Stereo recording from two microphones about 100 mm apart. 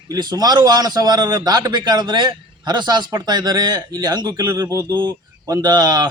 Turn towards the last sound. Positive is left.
turn(degrees=-45)  # may be behind; listen again after turning